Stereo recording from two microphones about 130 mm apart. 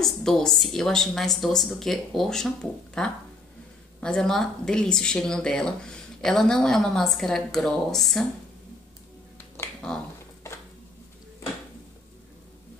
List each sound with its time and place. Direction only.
0.0 s speech: 5° left (ahead or behind)
9.8 s finger snapping: 5° left (ahead or behind)